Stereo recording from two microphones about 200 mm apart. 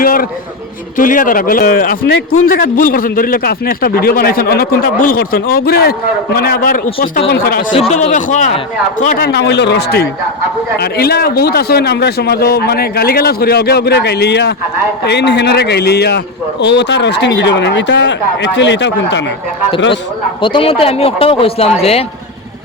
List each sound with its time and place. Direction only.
0.0 s a sound: 45° left (ahead or behind)
0.9 s a man's voice: 40° left (ahead or behind)
7.7 s a man's voice: 30° left (ahead or behind); by 19.2 s 60° left (ahead or behind)
20.4 s speech: 25° left (ahead or behind)